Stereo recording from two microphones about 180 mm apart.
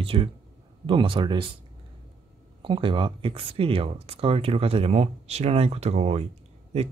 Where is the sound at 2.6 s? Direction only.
30° right (ahead or behind).